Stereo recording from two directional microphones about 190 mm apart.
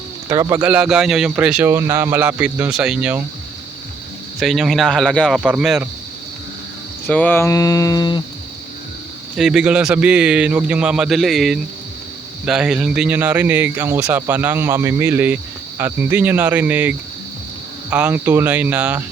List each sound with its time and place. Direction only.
0.3 s speech: 15° right (ahead or behind)
4.4 s a man's voice: centre (ahead or behind)
7.1 s speech: 10° left (ahead or behind)
9.4 s a man's voice: 5° right (ahead or behind)
17.9 s speech: 10° right (ahead or behind)